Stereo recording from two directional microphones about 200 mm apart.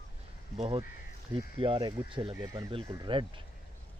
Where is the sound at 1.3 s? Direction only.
25° right (ahead or behind).